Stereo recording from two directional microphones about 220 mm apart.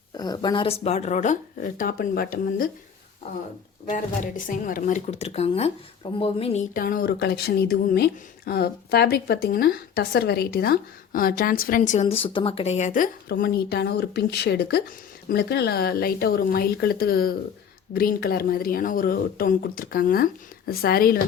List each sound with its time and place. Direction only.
0.2 s speech: 20° left (ahead or behind); by 2.6 s 40° left (ahead or behind)
3.8 s speech: 35° left (ahead or behind)